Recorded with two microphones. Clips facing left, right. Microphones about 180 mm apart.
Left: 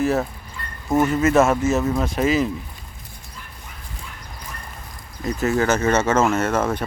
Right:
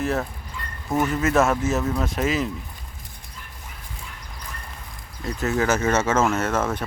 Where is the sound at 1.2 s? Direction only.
5° left (ahead or behind).